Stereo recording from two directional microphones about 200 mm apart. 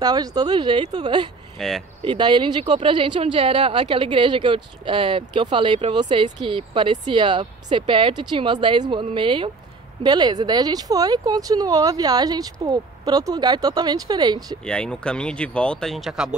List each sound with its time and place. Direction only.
0.0 s speech: 20° right (ahead or behind)
1.6 s speech: centre (ahead or behind)
2.0 s speech: 25° right (ahead or behind)
14.7 s speech: 5° left (ahead or behind)